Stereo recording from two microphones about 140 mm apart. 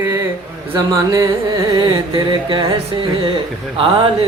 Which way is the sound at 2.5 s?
35° right (ahead or behind).